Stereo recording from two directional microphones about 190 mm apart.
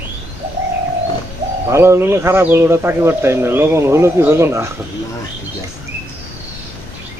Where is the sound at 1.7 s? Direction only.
15° right (ahead or behind).